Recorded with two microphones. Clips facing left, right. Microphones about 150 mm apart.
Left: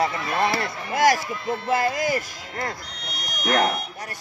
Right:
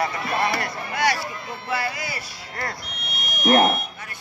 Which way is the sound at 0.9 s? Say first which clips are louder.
Left 5 dB; 45° left (ahead or behind).